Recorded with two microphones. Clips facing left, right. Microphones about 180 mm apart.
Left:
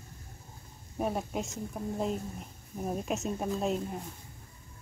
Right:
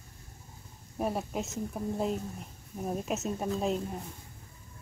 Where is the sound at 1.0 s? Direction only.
Centre (ahead or behind).